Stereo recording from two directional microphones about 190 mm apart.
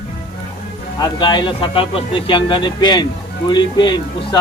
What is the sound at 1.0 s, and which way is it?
Speech, 20° left (ahead or behind).